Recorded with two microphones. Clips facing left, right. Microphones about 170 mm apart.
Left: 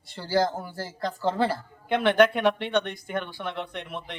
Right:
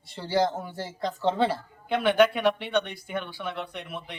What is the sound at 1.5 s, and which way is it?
Speech, 10° right (ahead or behind).